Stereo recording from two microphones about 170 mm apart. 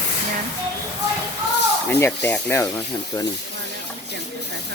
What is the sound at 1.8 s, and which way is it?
Speech, 10° left (ahead or behind).